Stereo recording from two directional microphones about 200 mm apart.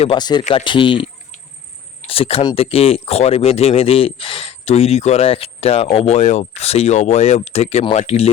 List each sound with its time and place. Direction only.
0.0 s speech: 25° left (ahead or behind)